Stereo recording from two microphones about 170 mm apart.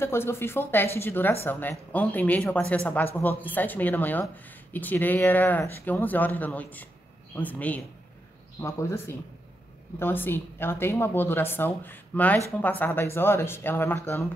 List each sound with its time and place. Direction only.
0.0 s a woman's voice: 15° left (ahead or behind)